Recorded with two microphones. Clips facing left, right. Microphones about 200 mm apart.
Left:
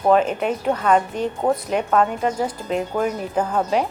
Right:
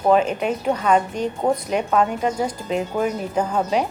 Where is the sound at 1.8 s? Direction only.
10° right (ahead or behind).